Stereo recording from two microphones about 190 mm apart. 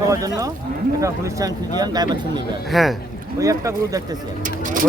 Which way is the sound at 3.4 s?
15° right (ahead or behind).